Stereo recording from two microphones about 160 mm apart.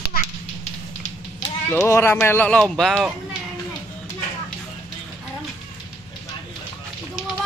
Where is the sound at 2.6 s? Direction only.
Centre (ahead or behind).